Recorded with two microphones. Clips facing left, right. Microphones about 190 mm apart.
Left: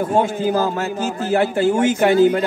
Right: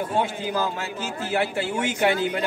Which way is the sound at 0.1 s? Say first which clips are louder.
Left 8 dB; 45° left (ahead or behind).